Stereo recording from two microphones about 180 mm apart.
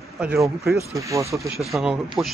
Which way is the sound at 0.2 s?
5° right (ahead or behind).